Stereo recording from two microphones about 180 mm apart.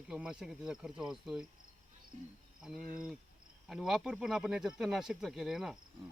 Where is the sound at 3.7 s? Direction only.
Centre (ahead or behind).